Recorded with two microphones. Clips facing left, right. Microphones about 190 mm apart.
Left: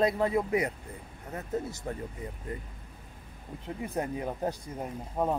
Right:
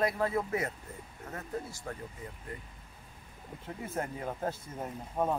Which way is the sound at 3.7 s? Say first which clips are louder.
Left 4 dB; 15° left (ahead or behind).